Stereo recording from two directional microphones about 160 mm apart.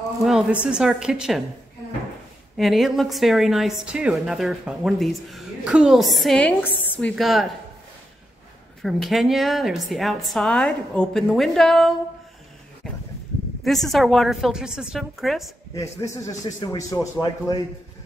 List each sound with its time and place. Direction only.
0.2 s a woman's voice: centre (ahead or behind)
2.5 s a woman's voice: centre (ahead or behind)
8.8 s a woman's voice: centre (ahead or behind)
13.7 s a woman's voice: centre (ahead or behind)
15.7 s a man's voice: 20° left (ahead or behind)